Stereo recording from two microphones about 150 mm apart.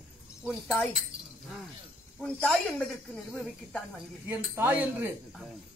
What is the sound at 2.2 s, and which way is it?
Speech, 5° left (ahead or behind).